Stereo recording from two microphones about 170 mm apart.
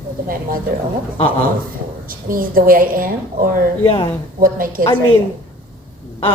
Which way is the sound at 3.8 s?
25° left (ahead or behind).